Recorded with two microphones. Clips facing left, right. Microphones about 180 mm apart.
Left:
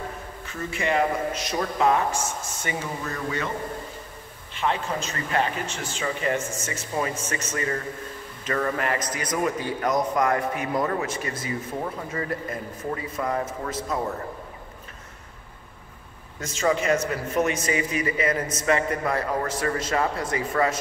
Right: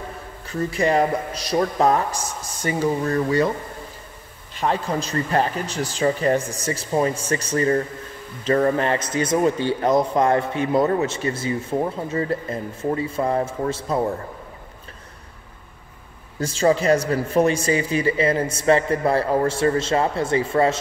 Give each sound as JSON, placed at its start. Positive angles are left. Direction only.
{"t": 0.5, "sound": "speech", "side_deg": -35}
{"t": 4.6, "sound": "a man's voice", "side_deg": -40}
{"t": 16.3, "sound": "speech", "side_deg": -30}